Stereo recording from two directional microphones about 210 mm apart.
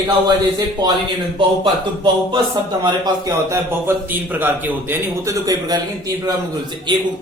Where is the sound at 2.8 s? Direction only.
20° right (ahead or behind).